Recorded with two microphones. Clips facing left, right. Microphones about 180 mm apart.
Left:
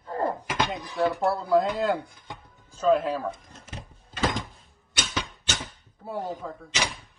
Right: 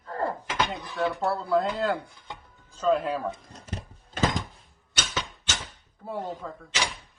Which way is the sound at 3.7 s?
45° right (ahead or behind).